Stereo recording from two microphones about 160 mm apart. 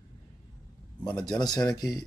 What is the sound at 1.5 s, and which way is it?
Speech, 25° left (ahead or behind).